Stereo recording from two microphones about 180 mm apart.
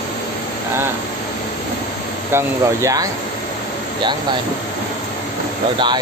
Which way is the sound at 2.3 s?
20° right (ahead or behind).